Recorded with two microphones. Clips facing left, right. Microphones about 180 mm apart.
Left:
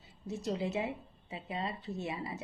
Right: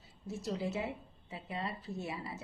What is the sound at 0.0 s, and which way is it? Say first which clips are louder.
A woman's voice: left 3 dB; 20° left (ahead or behind).